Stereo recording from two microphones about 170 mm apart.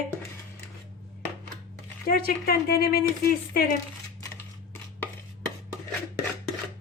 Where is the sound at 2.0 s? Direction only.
60° left (ahead or behind).